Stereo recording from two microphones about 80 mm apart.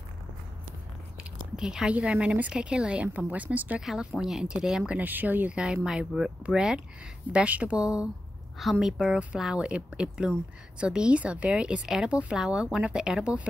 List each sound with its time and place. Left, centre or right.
1.6 s a woman's voice: centre
3.8 s a woman's voice: centre
4.9 s speech: right
5.6 s a woman's voice: centre